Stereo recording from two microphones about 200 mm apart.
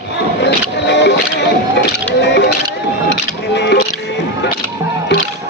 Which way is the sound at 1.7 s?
60° left (ahead or behind).